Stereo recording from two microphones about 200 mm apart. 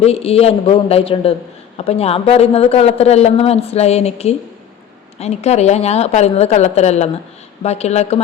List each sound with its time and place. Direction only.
0.0 s a man's voice: 30° left (ahead or behind)